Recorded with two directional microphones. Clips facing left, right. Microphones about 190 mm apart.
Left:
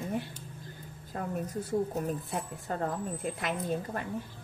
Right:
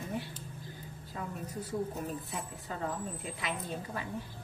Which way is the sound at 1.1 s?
50° left (ahead or behind).